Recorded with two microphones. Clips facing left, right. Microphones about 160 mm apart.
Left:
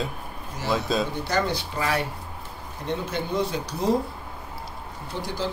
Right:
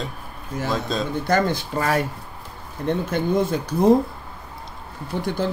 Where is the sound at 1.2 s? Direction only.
50° right (ahead or behind).